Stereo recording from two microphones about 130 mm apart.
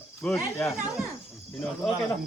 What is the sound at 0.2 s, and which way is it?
Speech, 15° left (ahead or behind).